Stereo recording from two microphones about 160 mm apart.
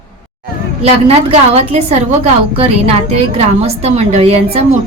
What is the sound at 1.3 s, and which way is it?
A woman's voice, 40° right (ahead or behind).